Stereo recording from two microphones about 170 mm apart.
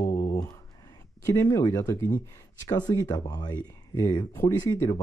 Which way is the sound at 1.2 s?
15° left (ahead or behind).